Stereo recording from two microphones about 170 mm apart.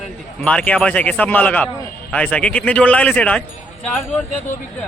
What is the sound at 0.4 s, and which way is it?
A man's voice, 10° left (ahead or behind).